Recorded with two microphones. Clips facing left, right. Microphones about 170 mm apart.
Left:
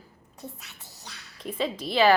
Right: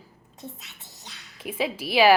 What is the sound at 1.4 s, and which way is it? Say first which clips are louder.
Speech: right 1 dB; 5° right (ahead or behind).